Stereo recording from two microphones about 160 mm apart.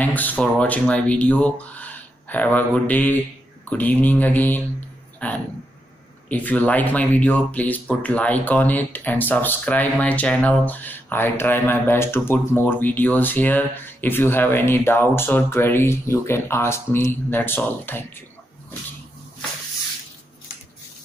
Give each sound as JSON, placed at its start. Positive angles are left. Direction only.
{"t": 0.0, "sound": "speech", "side_deg": 10}